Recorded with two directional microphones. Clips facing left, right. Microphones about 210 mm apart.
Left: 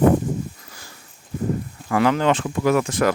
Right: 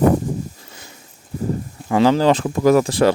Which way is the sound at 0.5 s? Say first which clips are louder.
Right 3 dB; 25° right (ahead or behind).